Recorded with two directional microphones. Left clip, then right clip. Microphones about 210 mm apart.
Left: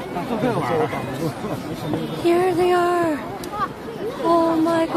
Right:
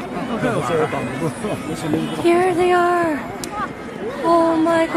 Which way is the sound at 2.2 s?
10° right (ahead or behind).